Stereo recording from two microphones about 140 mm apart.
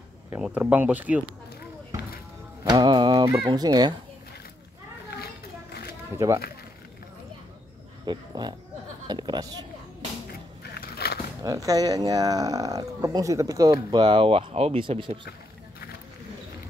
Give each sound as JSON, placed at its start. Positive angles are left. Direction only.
{"t": 0.4, "sound": "speech", "side_deg": -10}
{"t": 2.6, "sound": "music", "side_deg": -35}
{"t": 3.3, "sound": "speech", "side_deg": -30}
{"t": 6.1, "sound": "speech", "side_deg": -20}
{"t": 8.0, "sound": "speech", "side_deg": -30}
{"t": 11.4, "sound": "speech", "side_deg": -25}